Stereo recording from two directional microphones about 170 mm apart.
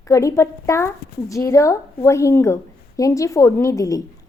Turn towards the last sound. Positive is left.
turn(degrees=20)  # may be behind; listen again after turning